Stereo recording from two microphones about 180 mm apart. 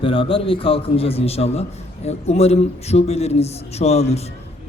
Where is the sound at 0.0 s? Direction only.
30° left (ahead or behind).